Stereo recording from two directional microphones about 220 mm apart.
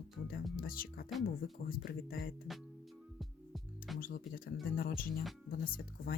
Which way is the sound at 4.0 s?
40° left (ahead or behind).